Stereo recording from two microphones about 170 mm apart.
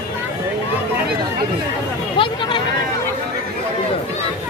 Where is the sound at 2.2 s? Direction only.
30° left (ahead or behind).